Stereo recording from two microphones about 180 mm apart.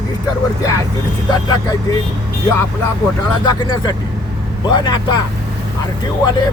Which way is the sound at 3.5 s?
25° left (ahead or behind).